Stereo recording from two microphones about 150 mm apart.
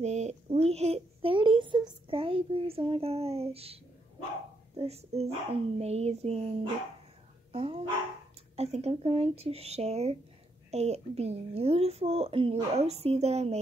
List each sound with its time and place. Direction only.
0.0 s a child's voice: 50° right (ahead or behind)
7.5 s speech: 40° right (ahead or behind)